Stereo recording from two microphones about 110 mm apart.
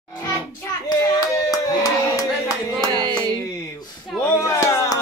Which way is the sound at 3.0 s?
40° right (ahead or behind).